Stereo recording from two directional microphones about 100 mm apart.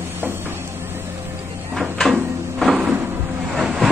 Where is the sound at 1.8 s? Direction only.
Centre (ahead or behind).